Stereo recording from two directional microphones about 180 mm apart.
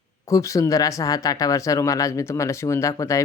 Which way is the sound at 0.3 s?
15° left (ahead or behind).